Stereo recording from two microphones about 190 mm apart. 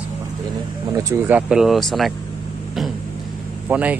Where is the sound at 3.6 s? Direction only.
10° right (ahead or behind).